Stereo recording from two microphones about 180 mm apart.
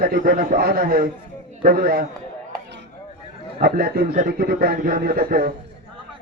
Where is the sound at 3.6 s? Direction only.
55° right (ahead or behind).